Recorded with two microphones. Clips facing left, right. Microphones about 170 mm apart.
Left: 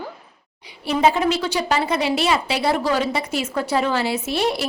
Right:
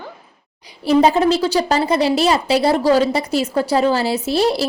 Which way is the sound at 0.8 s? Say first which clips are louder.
Right 5 dB; 35° right (ahead or behind).